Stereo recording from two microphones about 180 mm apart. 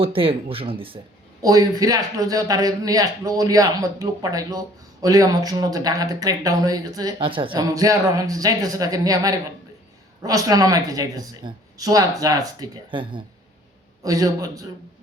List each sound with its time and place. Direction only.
0.0 s speech: 30° right (ahead or behind)
1.4 s a man's voice: 20° right (ahead or behind)